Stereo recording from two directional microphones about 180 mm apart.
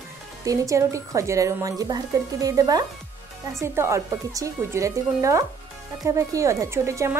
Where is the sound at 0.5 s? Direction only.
15° right (ahead or behind).